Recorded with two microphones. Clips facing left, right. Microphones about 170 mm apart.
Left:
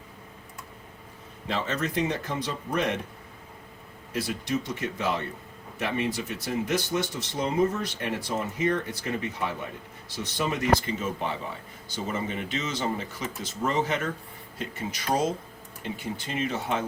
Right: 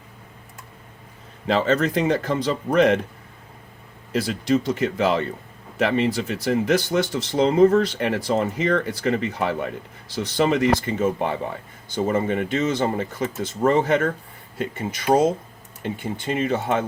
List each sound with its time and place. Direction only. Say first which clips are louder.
1.5 s speech: right 9 dB; 90° right
4.1 s speech: right 8 dB; 90° right
10.8 s speech: right 8 dB; 55° right (ahead or behind)